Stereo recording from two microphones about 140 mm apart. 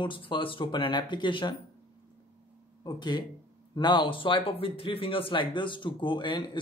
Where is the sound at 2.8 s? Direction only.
30° left (ahead or behind).